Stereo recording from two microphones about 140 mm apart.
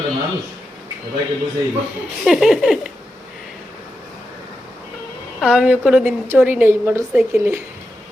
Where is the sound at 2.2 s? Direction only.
Centre (ahead or behind).